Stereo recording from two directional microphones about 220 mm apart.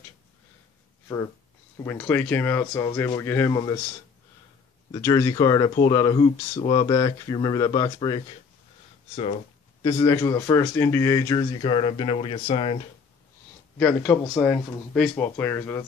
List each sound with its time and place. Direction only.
1.8 s speech: 10° left (ahead or behind)
4.9 s speech: 15° left (ahead or behind)
13.7 s speech: 5° left (ahead or behind)